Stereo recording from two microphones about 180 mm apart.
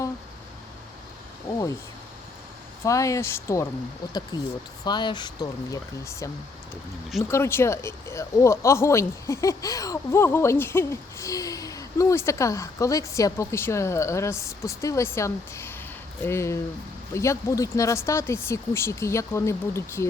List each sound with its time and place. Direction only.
1.5 s speech: 20° left (ahead or behind)
2.8 s speech: 15° left (ahead or behind)